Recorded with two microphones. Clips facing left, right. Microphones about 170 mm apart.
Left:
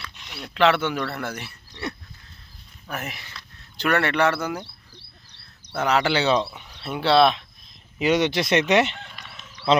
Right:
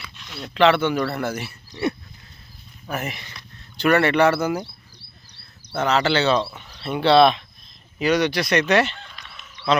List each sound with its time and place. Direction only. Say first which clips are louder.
0.2 s speech: right 3 dB; 15° left (ahead or behind); by 4.6 s 5° right (ahead or behind)
5.8 s speech: right 1 dB; 10° left (ahead or behind)
7.9 s speech: right 1 dB; 25° left (ahead or behind)